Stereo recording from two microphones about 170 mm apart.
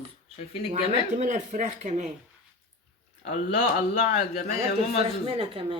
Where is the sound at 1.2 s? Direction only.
45° right (ahead or behind).